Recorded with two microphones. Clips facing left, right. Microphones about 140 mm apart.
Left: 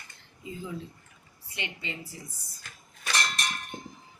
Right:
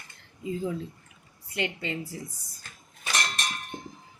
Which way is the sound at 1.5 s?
45° right (ahead or behind).